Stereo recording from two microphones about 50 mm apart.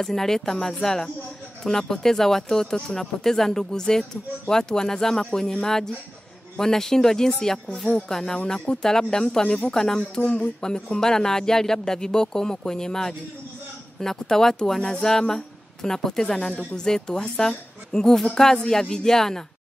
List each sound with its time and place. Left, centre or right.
0.0 s speech: centre
8.5 s speech: left